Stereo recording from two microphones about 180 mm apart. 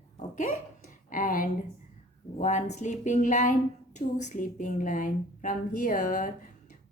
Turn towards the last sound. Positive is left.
turn(degrees=50)  # may be behind; listen again after turning